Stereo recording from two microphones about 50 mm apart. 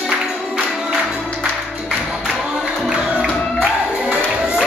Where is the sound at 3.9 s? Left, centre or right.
Centre.